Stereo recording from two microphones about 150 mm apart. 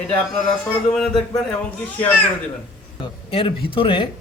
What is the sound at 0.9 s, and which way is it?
Speech, 5° left (ahead or behind).